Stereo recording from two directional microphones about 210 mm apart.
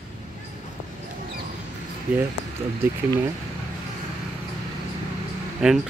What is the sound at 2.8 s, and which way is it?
Speech, 15° right (ahead or behind).